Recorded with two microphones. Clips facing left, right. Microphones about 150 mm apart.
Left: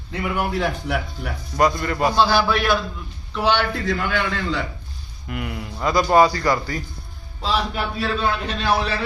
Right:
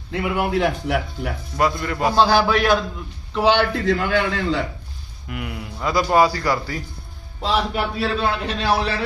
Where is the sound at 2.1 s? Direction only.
40° right (ahead or behind).